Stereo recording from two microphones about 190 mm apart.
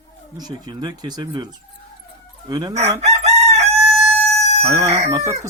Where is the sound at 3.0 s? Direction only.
35° right (ahead or behind).